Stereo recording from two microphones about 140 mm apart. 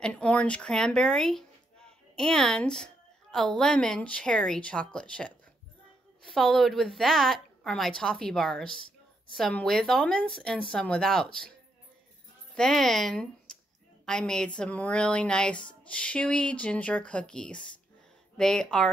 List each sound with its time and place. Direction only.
0.0 s a woman's voice: 10° left (ahead or behind)
12.5 s a woman's voice: centre (ahead or behind)
13.5 s a sound: 5° left (ahead or behind)
14.0 s a woman's voice: 5° left (ahead or behind)